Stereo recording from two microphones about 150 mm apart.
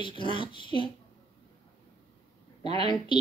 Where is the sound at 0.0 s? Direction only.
35° left (ahead or behind).